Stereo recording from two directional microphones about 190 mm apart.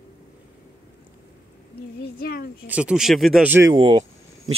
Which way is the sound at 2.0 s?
50° left (ahead or behind).